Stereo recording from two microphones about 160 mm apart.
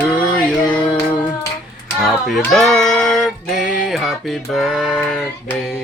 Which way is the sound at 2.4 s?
Centre (ahead or behind).